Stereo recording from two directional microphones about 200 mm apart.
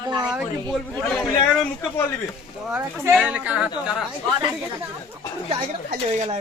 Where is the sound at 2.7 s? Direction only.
5° right (ahead or behind).